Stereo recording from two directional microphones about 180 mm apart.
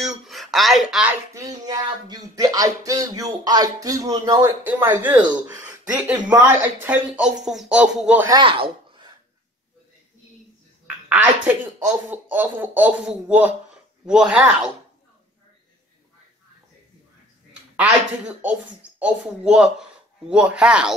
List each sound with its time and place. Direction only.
0.0 s a sound: centre (ahead or behind)
1.3 s a sound: 20° right (ahead or behind)
4.6 s speech: 15° right (ahead or behind)
8.3 s speech: 30° right (ahead or behind)
11.1 s speech: 10° right (ahead or behind)
17.7 s speech: 5° right (ahead or behind)